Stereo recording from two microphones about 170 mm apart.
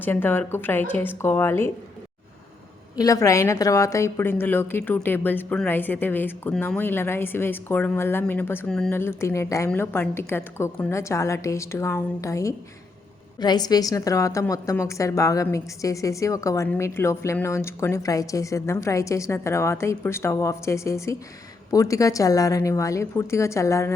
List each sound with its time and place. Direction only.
0.0 s a woman's voice: 10° left (ahead or behind)
2.9 s a woman's voice: 20° left (ahead or behind)